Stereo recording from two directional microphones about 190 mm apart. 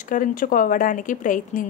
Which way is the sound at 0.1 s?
45° left (ahead or behind).